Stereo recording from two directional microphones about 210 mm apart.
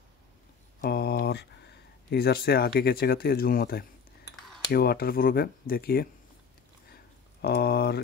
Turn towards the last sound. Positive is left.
turn(degrees=50)  # may be behind; listen again after turning